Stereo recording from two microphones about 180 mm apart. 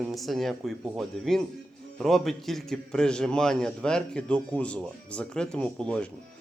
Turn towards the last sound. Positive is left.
turn(degrees=5)  # may be behind; listen again after turning